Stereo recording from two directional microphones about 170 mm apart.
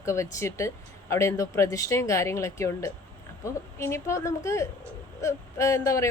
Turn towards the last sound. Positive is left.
turn(degrees=15)  # may be behind; listen again after turning